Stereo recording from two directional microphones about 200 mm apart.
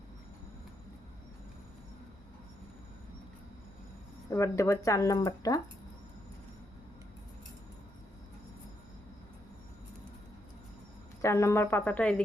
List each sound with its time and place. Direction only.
4.3 s speech: 15° left (ahead or behind)
11.2 s speech: 15° left (ahead or behind)